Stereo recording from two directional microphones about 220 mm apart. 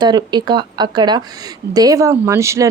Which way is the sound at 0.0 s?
20° right (ahead or behind).